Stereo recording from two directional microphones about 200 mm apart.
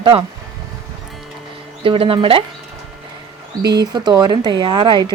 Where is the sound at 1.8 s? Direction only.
25° right (ahead or behind).